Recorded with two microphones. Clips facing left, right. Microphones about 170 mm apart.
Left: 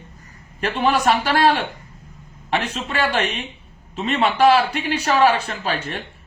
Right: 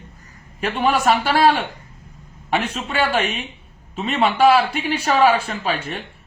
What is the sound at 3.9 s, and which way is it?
Speech, 5° right (ahead or behind).